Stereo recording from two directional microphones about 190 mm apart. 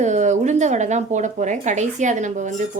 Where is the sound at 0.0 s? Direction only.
40° right (ahead or behind).